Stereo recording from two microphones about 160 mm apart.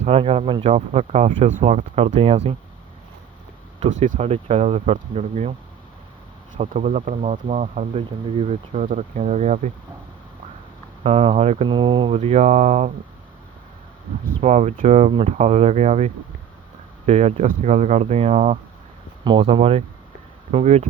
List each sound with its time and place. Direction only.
0.0 s speech: 40° right (ahead or behind)
3.8 s speech: 50° right (ahead or behind)
6.6 s speech: 50° right (ahead or behind)
11.0 s speech: 35° right (ahead or behind)
14.4 s speech: 45° right (ahead or behind)